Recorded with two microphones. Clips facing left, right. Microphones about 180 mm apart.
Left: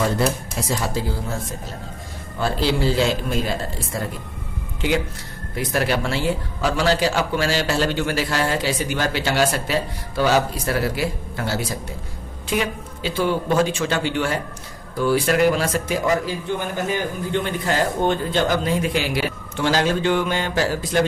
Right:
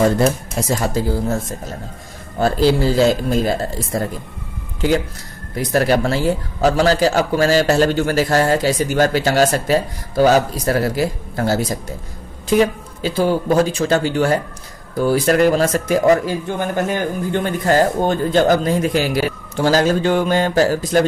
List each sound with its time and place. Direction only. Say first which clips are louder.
0.7 s a man's voice: right 5 dB; 45° right (ahead or behind)
5.6 s a man's voice: right 6 dB; 40° right (ahead or behind)